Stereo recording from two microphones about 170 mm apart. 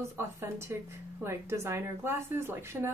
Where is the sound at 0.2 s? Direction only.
15° right (ahead or behind).